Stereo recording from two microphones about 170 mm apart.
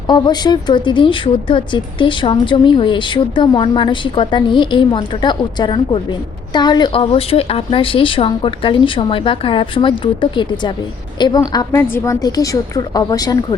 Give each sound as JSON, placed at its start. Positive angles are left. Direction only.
{"t": 0.1, "sound": "speech", "side_deg": 25}